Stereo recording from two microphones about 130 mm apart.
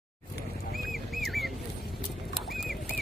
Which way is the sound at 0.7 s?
Centre (ahead or behind).